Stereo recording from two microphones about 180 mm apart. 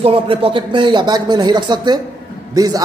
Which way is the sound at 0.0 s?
30° right (ahead or behind).